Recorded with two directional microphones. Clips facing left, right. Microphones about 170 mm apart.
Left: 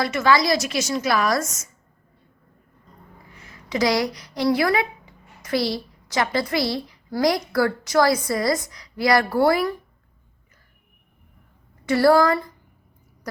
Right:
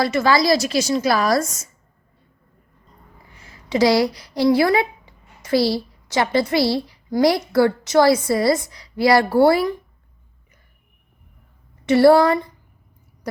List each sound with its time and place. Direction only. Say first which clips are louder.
0.0 s a woman's voice: right 2 dB; 35° right (ahead or behind)
3.3 s a woman's voice: right 5 dB; 30° right (ahead or behind)
11.9 s a woman's voice: right 4 dB; 25° right (ahead or behind)